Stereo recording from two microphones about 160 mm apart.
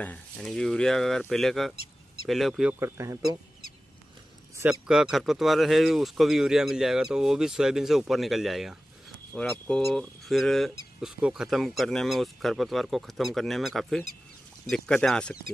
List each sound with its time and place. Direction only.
0.0 s speech: 5° left (ahead or behind)
2.8 s speech: 20° right (ahead or behind)
4.8 s speech: 5° right (ahead or behind)